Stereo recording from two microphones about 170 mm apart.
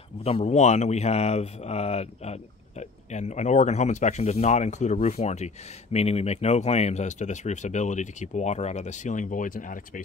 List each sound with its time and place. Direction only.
0.2 s speech: 35° left (ahead or behind); by 10.0 s 50° left (ahead or behind)